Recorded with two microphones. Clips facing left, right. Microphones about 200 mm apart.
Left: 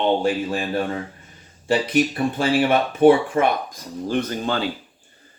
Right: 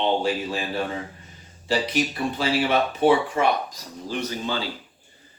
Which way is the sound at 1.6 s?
50° left (ahead or behind).